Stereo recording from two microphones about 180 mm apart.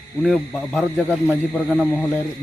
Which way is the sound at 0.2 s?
5° left (ahead or behind).